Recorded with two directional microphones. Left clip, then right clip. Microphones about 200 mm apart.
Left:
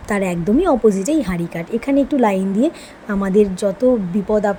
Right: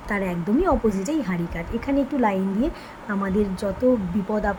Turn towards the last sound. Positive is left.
turn(degrees=25)  # may be behind; listen again after turning